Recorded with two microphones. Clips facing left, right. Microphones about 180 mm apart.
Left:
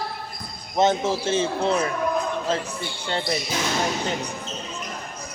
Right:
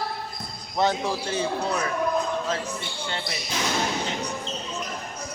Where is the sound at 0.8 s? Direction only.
20° left (ahead or behind).